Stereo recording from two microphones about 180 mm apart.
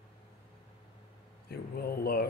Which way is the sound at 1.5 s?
60° left (ahead or behind).